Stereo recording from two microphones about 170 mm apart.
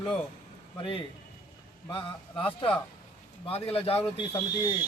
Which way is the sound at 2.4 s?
30° left (ahead or behind).